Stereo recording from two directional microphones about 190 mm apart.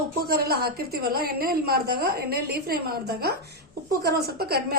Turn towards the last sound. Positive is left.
turn(degrees=-55)  # may be behind; listen again after turning